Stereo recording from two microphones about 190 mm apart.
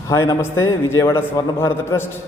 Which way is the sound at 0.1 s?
15° left (ahead or behind).